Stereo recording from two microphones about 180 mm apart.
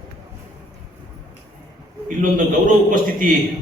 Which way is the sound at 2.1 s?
45° right (ahead or behind).